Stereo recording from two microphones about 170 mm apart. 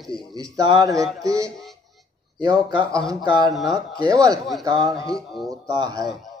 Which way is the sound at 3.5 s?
Centre (ahead or behind).